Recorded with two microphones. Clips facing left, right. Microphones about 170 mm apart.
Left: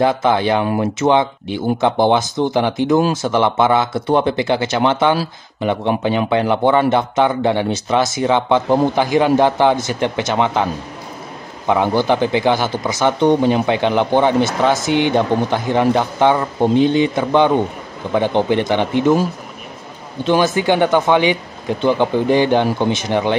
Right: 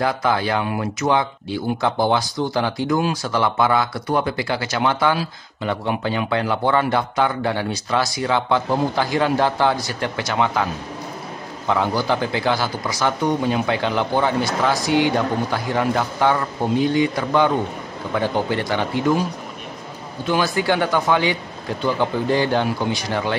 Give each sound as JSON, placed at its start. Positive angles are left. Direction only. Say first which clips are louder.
{"t": 0.0, "sound": "a man's voice", "louder": "left 5 dB", "side_deg": 25}
{"t": 20.2, "sound": "a man's voice", "louder": "left 5 dB", "side_deg": 20}